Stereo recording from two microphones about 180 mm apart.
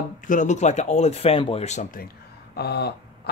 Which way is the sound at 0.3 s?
45° left (ahead or behind).